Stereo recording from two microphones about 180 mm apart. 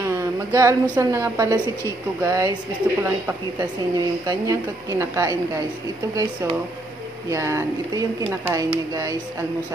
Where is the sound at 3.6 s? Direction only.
20° right (ahead or behind).